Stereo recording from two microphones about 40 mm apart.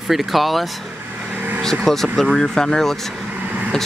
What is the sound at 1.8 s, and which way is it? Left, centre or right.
Speech, centre.